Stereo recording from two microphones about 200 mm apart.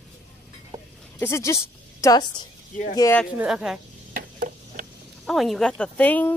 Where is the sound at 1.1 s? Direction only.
15° left (ahead or behind).